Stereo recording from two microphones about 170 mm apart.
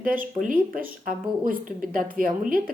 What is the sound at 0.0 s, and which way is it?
Speech, 55° right (ahead or behind).